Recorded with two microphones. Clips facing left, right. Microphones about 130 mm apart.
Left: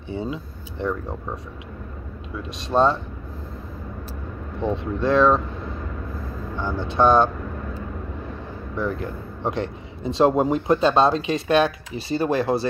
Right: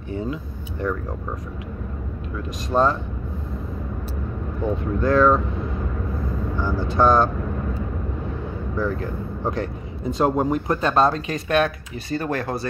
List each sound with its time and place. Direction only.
0.2 s speech: 25° left (ahead or behind)
2.7 s speech: 5° left (ahead or behind)
4.6 s speech: 25° left (ahead or behind)
6.6 s speech: 20° left (ahead or behind)
8.7 s speech: 20° left (ahead or behind)